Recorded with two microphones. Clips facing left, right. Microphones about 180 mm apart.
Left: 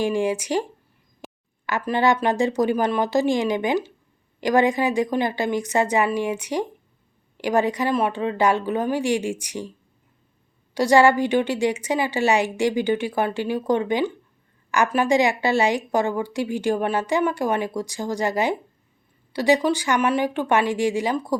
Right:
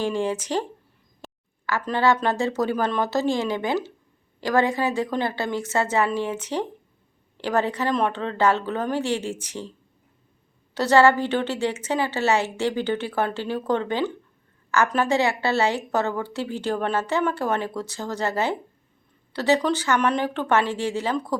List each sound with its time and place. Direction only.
0.0 s a woman's voice: 15° left (ahead or behind)
1.2 s a sound: 15° left (ahead or behind)
2.2 s a woman's voice: 15° left (ahead or behind)
10.8 s a woman's voice: 15° left (ahead or behind)